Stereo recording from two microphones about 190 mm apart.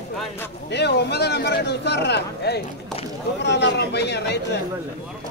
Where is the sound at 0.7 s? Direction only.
60° left (ahead or behind).